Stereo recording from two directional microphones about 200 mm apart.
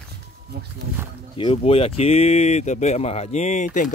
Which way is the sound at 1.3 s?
25° left (ahead or behind).